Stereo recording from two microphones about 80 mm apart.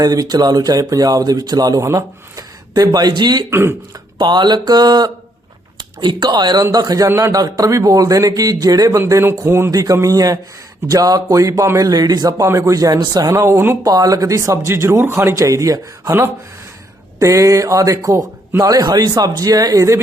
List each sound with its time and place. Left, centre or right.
0.0 s speech: right
1.8 s speech: right
3.5 s speech: right
4.2 s speech: right
6.0 s speech: right
9.7 s speech: right
11.9 s speech: right
13.3 s speech: right
13.8 s speech: right
17.2 s speech: right